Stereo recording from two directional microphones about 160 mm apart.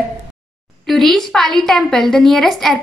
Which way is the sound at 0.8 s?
Centre (ahead or behind).